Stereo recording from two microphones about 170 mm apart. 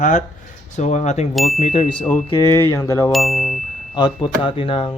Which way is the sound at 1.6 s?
35° left (ahead or behind).